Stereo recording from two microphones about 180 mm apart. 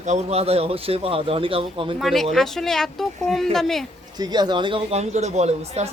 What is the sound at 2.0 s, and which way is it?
Speech, centre (ahead or behind).